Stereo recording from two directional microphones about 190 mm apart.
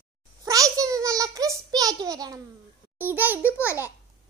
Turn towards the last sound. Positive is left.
turn(degrees=-10)  # may be behind; listen again after turning